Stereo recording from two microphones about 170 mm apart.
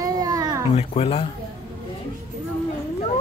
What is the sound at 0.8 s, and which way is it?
Speech, 35° left (ahead or behind).